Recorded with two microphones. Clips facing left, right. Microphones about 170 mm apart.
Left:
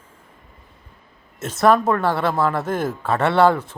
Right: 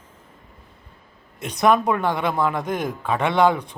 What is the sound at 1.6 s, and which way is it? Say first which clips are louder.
A man's voice: left 2 dB; 15° right (ahead or behind).